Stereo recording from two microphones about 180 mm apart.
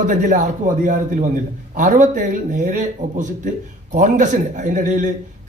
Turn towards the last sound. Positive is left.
turn(degrees=-45)  # may be behind; listen again after turning